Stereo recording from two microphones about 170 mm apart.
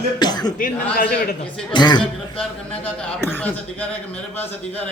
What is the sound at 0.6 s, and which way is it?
Speech, 60° left (ahead or behind).